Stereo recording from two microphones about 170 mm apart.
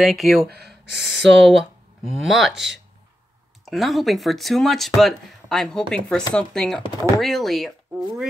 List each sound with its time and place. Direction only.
0.0 s speech: centre (ahead or behind)
0.5 s speech: 70° right (ahead or behind)
1.4 s speech: centre (ahead or behind)